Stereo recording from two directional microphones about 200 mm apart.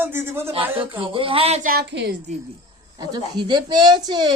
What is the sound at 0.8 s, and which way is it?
Speech, 25° right (ahead or behind).